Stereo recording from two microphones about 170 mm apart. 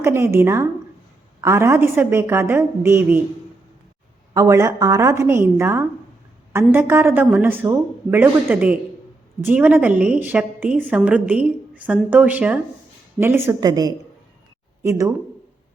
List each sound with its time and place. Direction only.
0.0 s a woman's voice: 15° right (ahead or behind)
4.4 s a woman's voice: 20° right (ahead or behind)